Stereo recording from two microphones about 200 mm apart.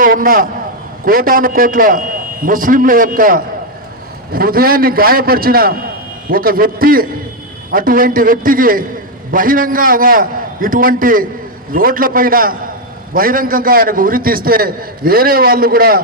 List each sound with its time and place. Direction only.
0.0 s a man's voice: 45° right (ahead or behind)